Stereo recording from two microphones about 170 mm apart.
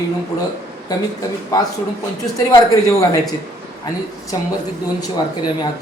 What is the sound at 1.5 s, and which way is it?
Speech, 20° left (ahead or behind).